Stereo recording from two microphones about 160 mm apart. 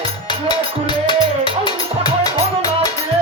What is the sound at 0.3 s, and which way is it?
Music, 30° left (ahead or behind).